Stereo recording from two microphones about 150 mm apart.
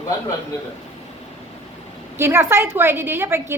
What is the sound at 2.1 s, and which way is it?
A woman's voice, 15° right (ahead or behind).